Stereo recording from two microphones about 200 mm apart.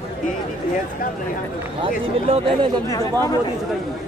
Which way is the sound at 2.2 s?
30° right (ahead or behind).